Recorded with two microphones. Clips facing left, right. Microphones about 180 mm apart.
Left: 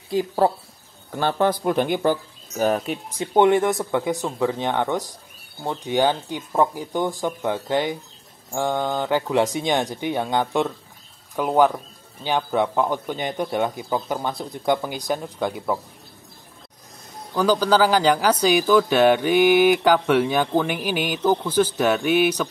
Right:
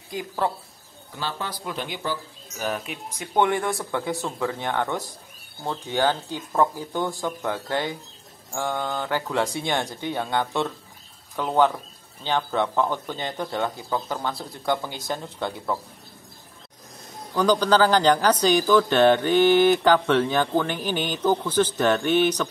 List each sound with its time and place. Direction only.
0.1 s speech: 30° left (ahead or behind)
1.1 s speech: 55° left (ahead or behind); by 3.3 s 35° left (ahead or behind)
3.3 s speech: 20° left (ahead or behind)
17.3 s speech: 10° left (ahead or behind)